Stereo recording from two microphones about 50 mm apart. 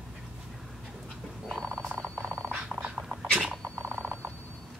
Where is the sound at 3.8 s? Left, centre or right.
Right.